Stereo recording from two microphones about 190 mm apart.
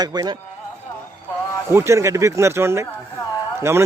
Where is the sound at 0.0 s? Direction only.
20° right (ahead or behind).